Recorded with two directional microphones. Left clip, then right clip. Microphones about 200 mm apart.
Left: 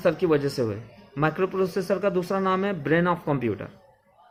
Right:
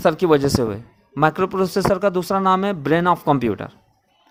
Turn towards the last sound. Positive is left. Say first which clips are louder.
# right 8 dB
turn(degrees=-50)  # may be behind; listen again after turning